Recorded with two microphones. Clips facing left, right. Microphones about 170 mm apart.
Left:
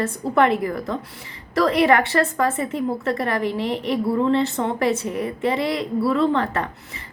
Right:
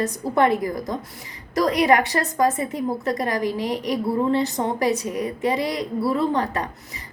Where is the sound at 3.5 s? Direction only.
40° right (ahead or behind).